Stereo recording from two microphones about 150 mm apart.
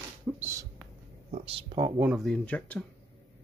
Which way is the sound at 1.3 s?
40° right (ahead or behind).